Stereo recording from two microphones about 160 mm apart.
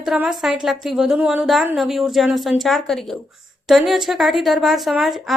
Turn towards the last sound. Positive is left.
turn(degrees=0)  # may be behind; listen again after turning